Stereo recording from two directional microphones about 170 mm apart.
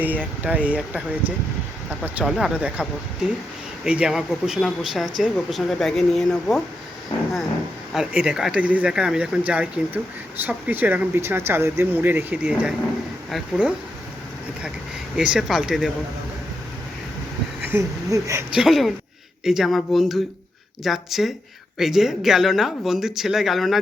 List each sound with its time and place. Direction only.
0.0 s speech: 10° right (ahead or behind)
3.8 s speech: 5° right (ahead or behind)
7.9 s speech: 5° right (ahead or behind)
15.1 s speech: 5° right (ahead or behind)
17.7 s speech: 15° right (ahead or behind)
18.5 s speech: centre (ahead or behind)